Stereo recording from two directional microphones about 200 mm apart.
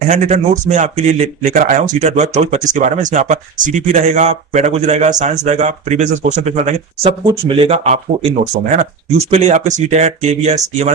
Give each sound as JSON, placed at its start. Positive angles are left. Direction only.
{"t": 0.1, "sound": "speech", "side_deg": -35}